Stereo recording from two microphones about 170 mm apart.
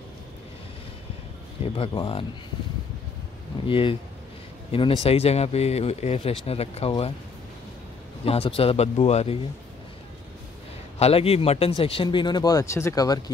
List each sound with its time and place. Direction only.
1.8 s speech: 30° left (ahead or behind)
3.6 s speech: 30° left (ahead or behind)
8.3 s speech: 35° left (ahead or behind)
11.0 s speech: 35° left (ahead or behind); by 13.2 s 20° left (ahead or behind)